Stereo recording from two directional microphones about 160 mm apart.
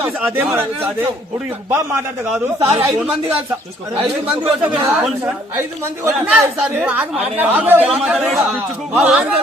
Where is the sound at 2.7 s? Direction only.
15° right (ahead or behind).